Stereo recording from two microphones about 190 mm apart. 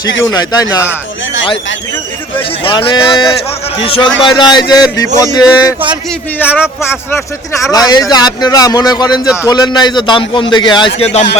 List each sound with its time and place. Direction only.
0.3 s a man's voice: 20° left (ahead or behind)
2.6 s a man's voice: 25° left (ahead or behind); by 6.6 s 10° left (ahead or behind)
7.7 s a man's voice: 20° left (ahead or behind)
9.2 s a man's voice: 5° right (ahead or behind)
9.5 s a man's voice: 20° left (ahead or behind)